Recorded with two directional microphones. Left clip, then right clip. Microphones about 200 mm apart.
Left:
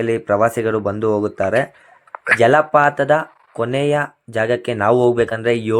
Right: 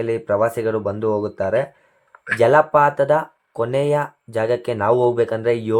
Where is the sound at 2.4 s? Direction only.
15° left (ahead or behind).